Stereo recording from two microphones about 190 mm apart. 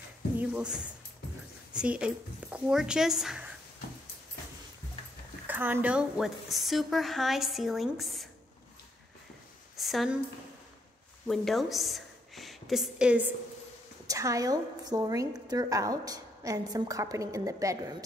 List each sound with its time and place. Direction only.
0.4 s a woman's voice: 5° right (ahead or behind)
5.5 s a woman's voice: 10° right (ahead or behind)
9.8 s a sound: centre (ahead or behind)
11.2 s a woman's voice: centre (ahead or behind)
14.0 s a woman's voice: 15° right (ahead or behind)